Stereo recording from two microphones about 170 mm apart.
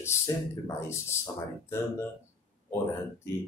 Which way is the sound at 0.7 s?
15° left (ahead or behind).